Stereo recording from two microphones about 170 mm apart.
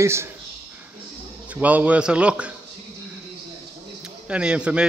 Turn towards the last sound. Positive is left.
turn(degrees=-5)  # may be behind; listen again after turning